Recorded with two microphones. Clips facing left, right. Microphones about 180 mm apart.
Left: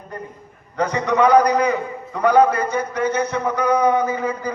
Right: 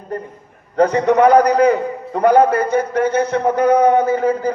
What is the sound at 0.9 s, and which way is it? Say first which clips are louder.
A man's voice: right 2 dB; 55° right (ahead or behind).